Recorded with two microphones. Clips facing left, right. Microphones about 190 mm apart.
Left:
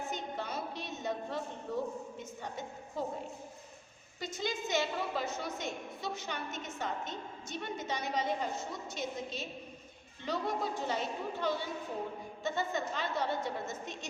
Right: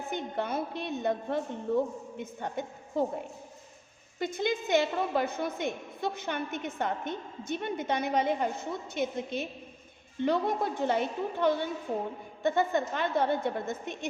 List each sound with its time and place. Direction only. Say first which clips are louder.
0.1 s a woman's voice: right 6 dB; 55° right (ahead or behind)
4.2 s a woman's voice: right 7 dB; 55° right (ahead or behind)